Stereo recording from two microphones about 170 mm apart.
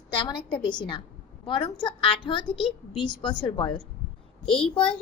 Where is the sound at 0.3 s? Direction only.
25° left (ahead or behind).